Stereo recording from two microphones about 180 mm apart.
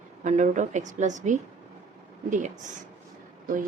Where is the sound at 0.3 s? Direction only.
40° right (ahead or behind).